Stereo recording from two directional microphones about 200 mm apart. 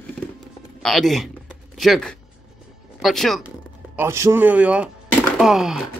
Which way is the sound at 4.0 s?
15° right (ahead or behind).